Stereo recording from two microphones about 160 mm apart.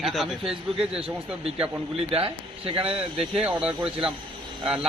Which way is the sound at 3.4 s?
5° right (ahead or behind).